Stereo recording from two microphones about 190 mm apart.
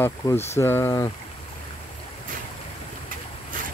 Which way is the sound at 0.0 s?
15° left (ahead or behind).